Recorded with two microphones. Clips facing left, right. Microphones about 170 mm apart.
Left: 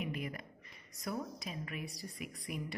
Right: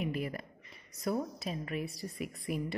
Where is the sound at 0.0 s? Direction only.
35° right (ahead or behind).